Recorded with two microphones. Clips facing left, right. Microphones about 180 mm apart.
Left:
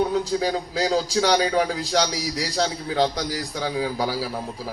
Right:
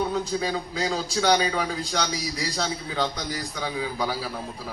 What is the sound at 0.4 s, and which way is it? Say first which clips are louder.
A man's voice: left 4 dB; 80° left.